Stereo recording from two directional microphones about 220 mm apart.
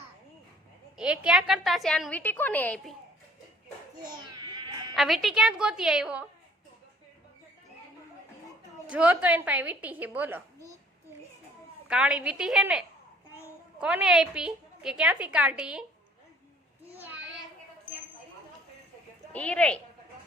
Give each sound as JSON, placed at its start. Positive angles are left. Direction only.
{"t": 0.9, "sound": "a woman's voice", "side_deg": -5}
{"t": 4.0, "sound": "a sound", "side_deg": -20}
{"t": 4.9, "sound": "a woman's voice", "side_deg": 0}
{"t": 8.9, "sound": "a woman's voice", "side_deg": -5}
{"t": 11.9, "sound": "a woman's voice", "side_deg": -5}
{"t": 17.0, "sound": "child singing", "side_deg": -10}
{"t": 19.3, "sound": "a woman's voice", "side_deg": 5}